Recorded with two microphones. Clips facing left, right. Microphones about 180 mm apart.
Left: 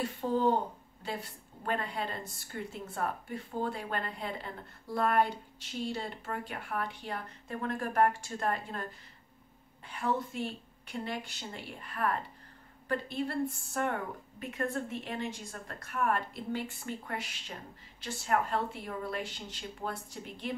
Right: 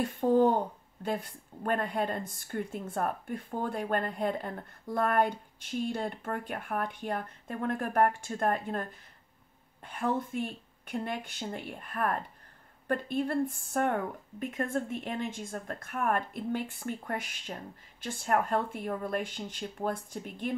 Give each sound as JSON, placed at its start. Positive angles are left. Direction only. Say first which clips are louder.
{"t": 0.0, "sound": "a woman's voice", "louder": "right 5 dB", "side_deg": -50}
{"t": 9.8, "sound": "a woman's voice", "louder": "right 2 dB", "side_deg": -50}